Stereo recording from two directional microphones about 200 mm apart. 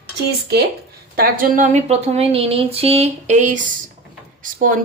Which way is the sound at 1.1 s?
45° right (ahead or behind).